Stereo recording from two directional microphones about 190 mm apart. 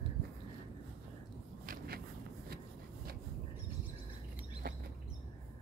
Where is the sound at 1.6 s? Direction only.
50° right (ahead or behind).